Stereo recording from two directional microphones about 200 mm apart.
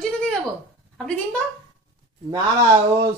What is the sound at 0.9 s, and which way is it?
Speech, 5° left (ahead or behind).